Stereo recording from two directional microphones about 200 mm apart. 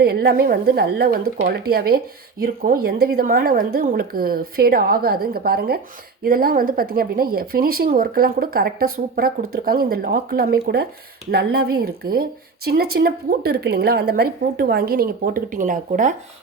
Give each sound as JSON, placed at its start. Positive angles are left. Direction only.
{"t": 0.0, "sound": "speech", "side_deg": -50}